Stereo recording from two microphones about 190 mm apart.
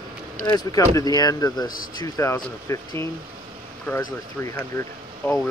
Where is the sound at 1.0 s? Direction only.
20° left (ahead or behind).